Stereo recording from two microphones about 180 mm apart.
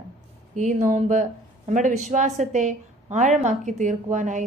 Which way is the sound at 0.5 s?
45° right (ahead or behind).